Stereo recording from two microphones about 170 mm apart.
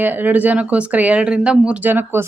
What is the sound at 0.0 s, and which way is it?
Speech, 10° right (ahead or behind).